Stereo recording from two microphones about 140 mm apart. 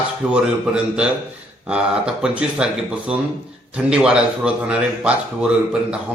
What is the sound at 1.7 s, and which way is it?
A man's voice, 5° right (ahead or behind).